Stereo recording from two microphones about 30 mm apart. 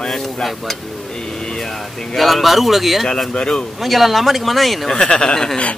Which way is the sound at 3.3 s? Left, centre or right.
Left.